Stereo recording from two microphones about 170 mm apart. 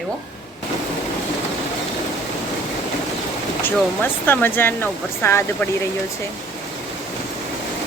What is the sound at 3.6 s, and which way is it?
Speech, 10° left (ahead or behind).